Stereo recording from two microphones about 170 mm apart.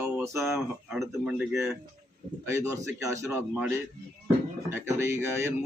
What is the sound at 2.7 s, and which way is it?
Speech, 20° right (ahead or behind).